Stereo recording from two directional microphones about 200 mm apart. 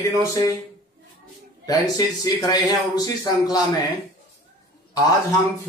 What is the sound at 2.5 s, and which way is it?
Speech, 20° left (ahead or behind).